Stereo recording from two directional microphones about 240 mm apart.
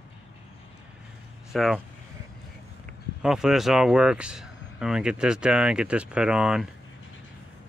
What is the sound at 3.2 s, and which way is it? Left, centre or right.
Speech, centre.